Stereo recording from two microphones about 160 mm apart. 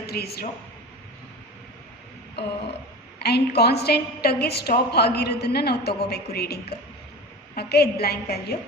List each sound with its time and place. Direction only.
0.0 s speech: 80° left
3.2 s a woman's voice: 90° left